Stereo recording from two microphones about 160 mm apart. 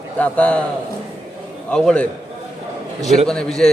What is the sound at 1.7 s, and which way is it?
Speech, 5° left (ahead or behind).